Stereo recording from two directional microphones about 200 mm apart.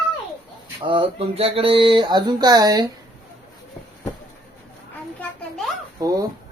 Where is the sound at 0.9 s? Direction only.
25° right (ahead or behind).